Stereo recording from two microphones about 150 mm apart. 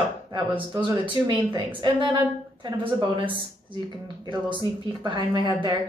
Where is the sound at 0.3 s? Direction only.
35° right (ahead or behind).